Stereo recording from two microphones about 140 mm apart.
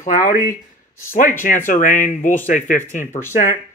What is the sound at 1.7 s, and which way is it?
Speech, 65° left (ahead or behind).